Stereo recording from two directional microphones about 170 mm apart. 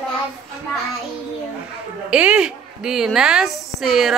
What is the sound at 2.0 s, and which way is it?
A woman's voice, 5° right (ahead or behind).